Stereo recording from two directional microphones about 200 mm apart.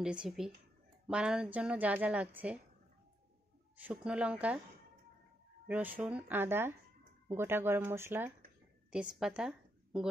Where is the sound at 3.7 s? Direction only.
5° right (ahead or behind).